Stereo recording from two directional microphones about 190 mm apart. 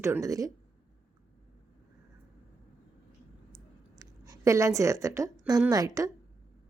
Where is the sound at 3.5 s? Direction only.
20° right (ahead or behind).